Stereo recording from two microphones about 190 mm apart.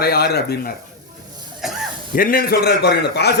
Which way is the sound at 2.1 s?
50° left (ahead or behind).